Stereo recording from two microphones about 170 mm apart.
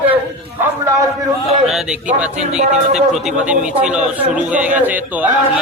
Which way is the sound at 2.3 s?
45° right (ahead or behind).